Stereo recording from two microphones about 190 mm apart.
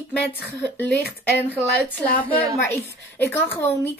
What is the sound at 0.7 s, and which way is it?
A woman's voice, 10° left (ahead or behind).